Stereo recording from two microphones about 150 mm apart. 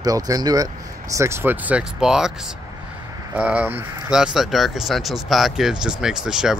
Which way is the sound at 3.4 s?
10° right (ahead or behind).